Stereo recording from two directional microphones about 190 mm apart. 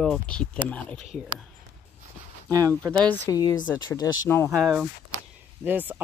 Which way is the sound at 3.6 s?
10° left (ahead or behind).